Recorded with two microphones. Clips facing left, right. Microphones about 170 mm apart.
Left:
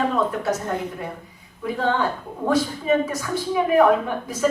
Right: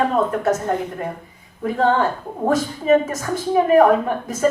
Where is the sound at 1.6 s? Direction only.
45° right (ahead or behind).